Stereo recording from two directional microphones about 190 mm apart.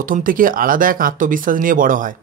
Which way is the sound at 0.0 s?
45° right (ahead or behind).